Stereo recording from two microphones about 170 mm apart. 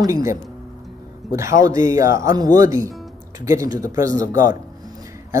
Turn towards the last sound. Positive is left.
turn(degrees=-20)  # may be behind; listen again after turning